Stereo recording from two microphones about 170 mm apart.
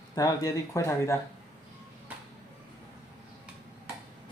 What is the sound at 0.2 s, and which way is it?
Speech, 20° left (ahead or behind).